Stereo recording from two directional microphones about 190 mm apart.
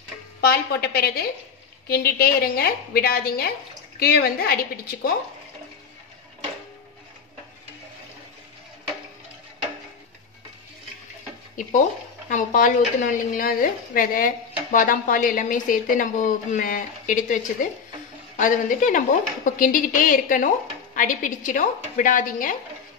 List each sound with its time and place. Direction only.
0.4 s a woman's voice: 55° left (ahead or behind)
12.3 s a woman's voice: 40° left (ahead or behind)